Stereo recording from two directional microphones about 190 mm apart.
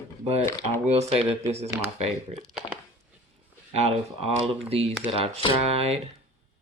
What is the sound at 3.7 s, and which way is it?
Speech, 35° right (ahead or behind).